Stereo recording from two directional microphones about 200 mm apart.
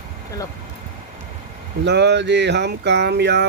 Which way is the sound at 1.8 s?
60° right (ahead or behind).